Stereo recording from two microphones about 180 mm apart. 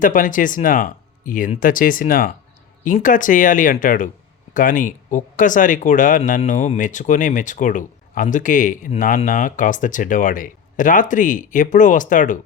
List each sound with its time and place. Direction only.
0.0 s speech: 50° left (ahead or behind)